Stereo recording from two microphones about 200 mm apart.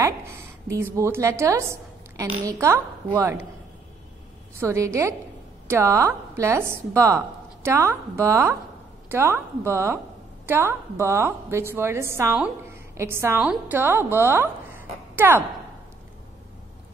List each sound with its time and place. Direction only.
0.0 s a woman's voice: 15° right (ahead or behind)
4.6 s a woman's voice: 15° right (ahead or behind)